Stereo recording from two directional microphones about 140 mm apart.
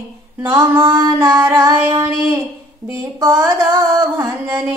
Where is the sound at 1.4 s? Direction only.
15° right (ahead or behind).